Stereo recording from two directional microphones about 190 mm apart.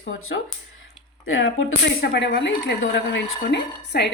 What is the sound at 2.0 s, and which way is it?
Speech, 65° left (ahead or behind).